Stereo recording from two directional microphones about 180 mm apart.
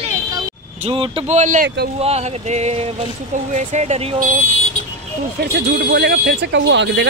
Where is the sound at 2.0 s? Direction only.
35° right (ahead or behind).